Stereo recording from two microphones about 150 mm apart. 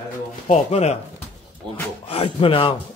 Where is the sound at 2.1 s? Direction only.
40° left (ahead or behind).